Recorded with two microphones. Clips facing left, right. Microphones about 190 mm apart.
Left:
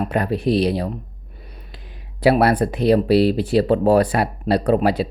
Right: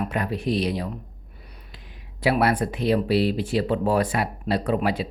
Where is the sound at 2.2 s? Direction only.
35° left (ahead or behind).